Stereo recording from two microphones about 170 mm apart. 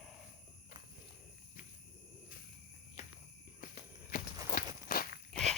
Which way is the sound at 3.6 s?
55° left (ahead or behind).